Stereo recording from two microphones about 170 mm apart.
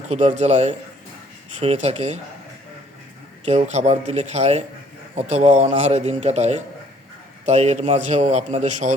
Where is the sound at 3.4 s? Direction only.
40° right (ahead or behind).